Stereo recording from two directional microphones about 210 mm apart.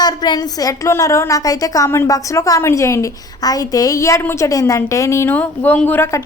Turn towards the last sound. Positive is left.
turn(degrees=10)  # may be behind; listen again after turning